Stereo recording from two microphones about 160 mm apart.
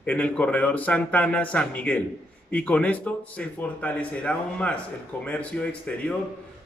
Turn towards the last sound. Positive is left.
turn(degrees=10)  # may be behind; listen again after turning